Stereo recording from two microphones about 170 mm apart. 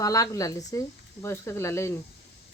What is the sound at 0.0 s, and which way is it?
Speech, 20° left (ahead or behind).